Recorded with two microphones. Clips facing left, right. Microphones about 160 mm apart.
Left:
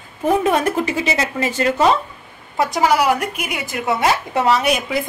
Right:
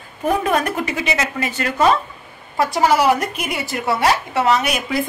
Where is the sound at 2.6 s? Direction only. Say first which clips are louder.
Right 1 dB; 15° left (ahead or behind).